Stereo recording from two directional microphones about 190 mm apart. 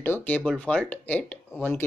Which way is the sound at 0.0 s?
10° left (ahead or behind).